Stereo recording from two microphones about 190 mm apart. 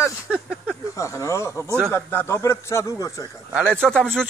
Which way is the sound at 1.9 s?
15° left (ahead or behind).